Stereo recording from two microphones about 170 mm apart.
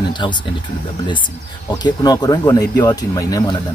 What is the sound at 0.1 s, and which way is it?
Speech, 25° left (ahead or behind).